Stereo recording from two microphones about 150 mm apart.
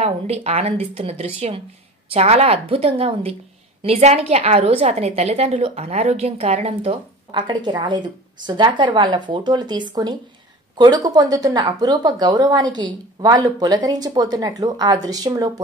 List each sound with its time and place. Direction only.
0.0 s a woman's voice: 40° right (ahead or behind); by 15.6 s 25° right (ahead or behind)